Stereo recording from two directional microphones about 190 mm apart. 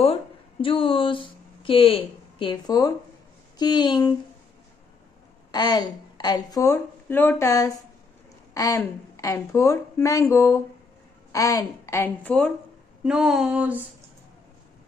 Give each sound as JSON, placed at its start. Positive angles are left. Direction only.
{"t": 0.0, "sound": "speech", "side_deg": 30}
{"t": 5.5, "sound": "a woman's voice", "side_deg": 20}
{"t": 13.0, "sound": "a sound", "side_deg": -5}